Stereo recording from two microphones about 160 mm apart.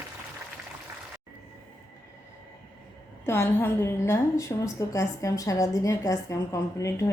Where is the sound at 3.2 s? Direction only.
15° left (ahead or behind).